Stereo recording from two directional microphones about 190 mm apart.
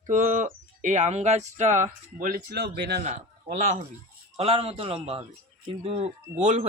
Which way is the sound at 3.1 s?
40° right (ahead or behind).